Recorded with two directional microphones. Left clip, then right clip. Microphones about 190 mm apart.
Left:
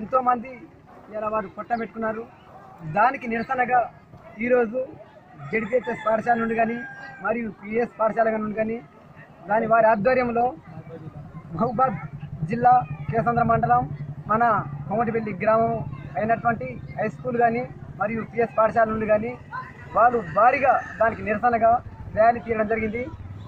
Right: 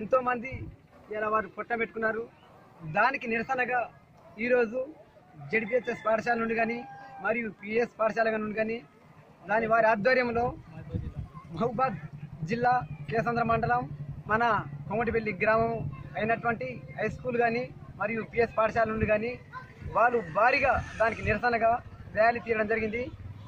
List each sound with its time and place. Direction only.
0.1 s speech: 25° right (ahead or behind)
11.6 s speech: 25° right (ahead or behind)